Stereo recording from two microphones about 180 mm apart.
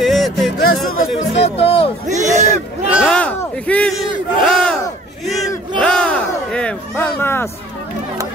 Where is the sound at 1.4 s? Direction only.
35° left (ahead or behind).